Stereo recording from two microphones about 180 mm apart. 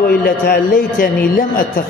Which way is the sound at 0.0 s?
55° left (ahead or behind).